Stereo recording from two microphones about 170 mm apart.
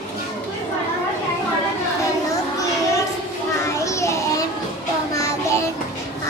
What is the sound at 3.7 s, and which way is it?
Children playing, 15° left (ahead or behind).